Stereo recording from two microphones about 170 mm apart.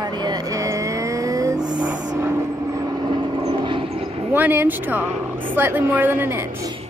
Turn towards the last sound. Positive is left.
turn(degrees=-15)  # may be behind; listen again after turning